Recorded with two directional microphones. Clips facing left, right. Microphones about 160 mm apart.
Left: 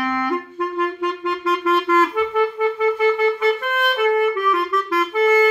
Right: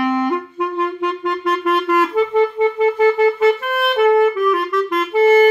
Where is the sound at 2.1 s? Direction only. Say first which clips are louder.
Right 4 dB; 30° right (ahead or behind).